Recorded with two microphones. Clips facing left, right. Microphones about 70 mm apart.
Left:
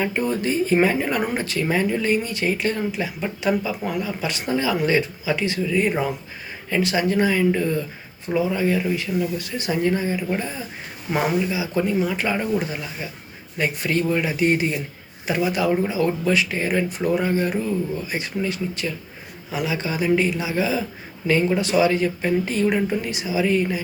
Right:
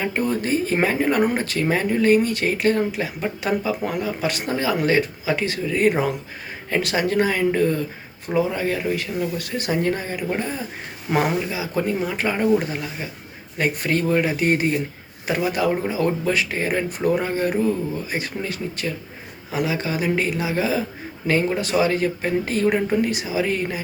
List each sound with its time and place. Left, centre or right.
0.4 s speech: right
4.4 s speech: right
4.8 s speech: right
5.2 s speech: right